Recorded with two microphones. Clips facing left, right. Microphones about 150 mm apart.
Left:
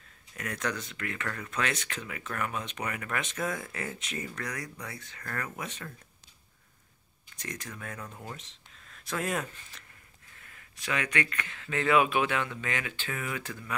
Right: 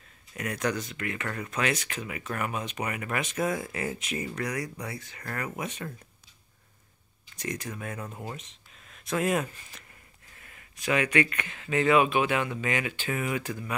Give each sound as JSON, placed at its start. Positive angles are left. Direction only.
{"t": 0.7, "sound": "speech", "side_deg": -5}
{"t": 7.3, "sound": "speech", "side_deg": -10}
{"t": 9.1, "sound": "speech", "side_deg": -5}
{"t": 10.9, "sound": "speech", "side_deg": -15}
{"t": 11.8, "sound": "speech", "side_deg": 0}
{"t": 12.3, "sound": "speech", "side_deg": -15}